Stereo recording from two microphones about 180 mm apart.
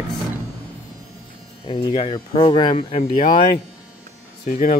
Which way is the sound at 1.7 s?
30° left (ahead or behind).